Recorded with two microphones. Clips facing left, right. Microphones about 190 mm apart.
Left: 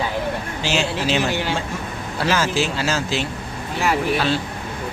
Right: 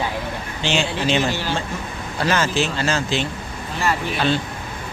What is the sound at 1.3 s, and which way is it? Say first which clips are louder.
A man's voice: left 1 dB; 15° left (ahead or behind).